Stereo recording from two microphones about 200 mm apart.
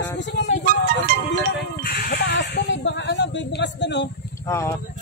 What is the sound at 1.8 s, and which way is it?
Speech, 50° left (ahead or behind).